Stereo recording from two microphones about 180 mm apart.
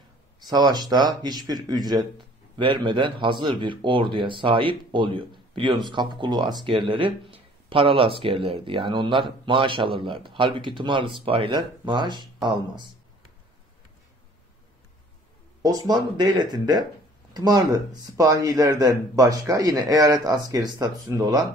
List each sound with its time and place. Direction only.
0.5 s speech: 25° right (ahead or behind)
15.6 s speech: 20° right (ahead or behind)